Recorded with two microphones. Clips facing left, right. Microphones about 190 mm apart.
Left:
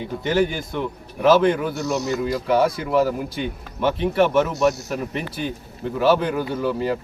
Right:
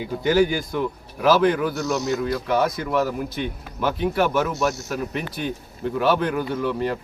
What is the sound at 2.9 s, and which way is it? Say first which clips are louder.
Speech: left 3 dB; 30° left (ahead or behind).